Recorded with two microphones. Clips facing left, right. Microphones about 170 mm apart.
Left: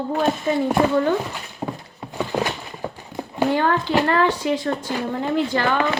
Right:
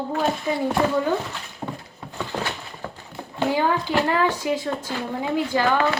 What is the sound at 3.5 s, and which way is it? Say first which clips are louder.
Speech: left 1 dB; 10° right (ahead or behind).